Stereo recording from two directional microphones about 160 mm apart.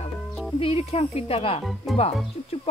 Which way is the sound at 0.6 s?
35° left (ahead or behind).